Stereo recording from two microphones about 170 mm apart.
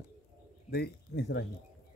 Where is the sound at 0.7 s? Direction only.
70° left (ahead or behind).